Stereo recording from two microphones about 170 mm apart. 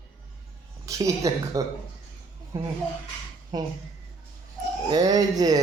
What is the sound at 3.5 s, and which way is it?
Speech, 25° right (ahead or behind).